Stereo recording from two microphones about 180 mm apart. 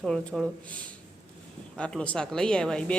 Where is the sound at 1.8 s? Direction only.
5° left (ahead or behind).